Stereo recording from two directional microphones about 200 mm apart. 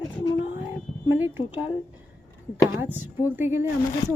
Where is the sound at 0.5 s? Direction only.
10° right (ahead or behind).